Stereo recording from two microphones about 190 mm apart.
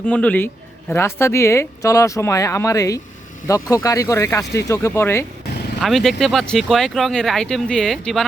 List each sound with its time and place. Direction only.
0.0 s a woman's voice: 5° left (ahead or behind)
5.8 s speech: centre (ahead or behind)